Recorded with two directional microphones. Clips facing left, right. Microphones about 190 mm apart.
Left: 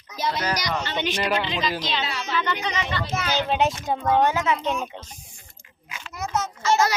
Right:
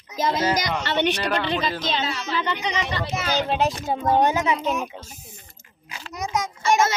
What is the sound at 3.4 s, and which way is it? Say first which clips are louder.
Speech: even; centre (ahead or behind).